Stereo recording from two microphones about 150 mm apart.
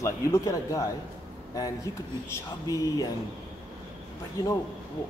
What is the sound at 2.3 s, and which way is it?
Speech, 20° left (ahead or behind).